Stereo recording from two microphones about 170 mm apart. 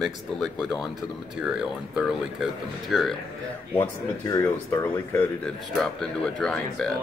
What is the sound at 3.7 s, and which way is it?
Speech, 20° left (ahead or behind).